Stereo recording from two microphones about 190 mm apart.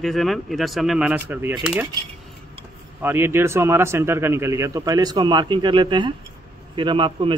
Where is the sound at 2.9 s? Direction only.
10° right (ahead or behind).